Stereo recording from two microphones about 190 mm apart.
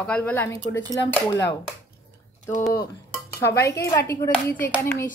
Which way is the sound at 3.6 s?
15° left (ahead or behind).